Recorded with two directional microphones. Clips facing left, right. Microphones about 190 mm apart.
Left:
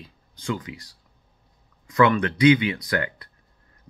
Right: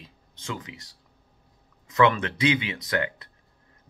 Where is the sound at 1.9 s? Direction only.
25° right (ahead or behind).